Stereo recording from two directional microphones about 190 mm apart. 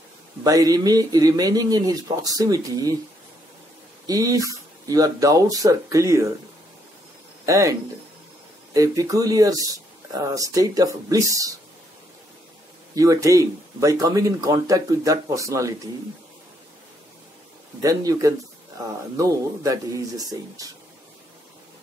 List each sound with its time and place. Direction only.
0.4 s speech: 20° right (ahead or behind)
4.0 s speech: 20° right (ahead or behind)
7.4 s speech: 15° right (ahead or behind)
8.7 s speech: 20° right (ahead or behind)
12.9 s speech: 15° right (ahead or behind)
17.8 s speech: 15° right (ahead or behind)